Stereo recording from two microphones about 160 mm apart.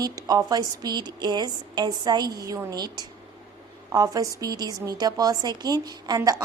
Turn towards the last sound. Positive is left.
turn(degrees=-20)  # may be behind; listen again after turning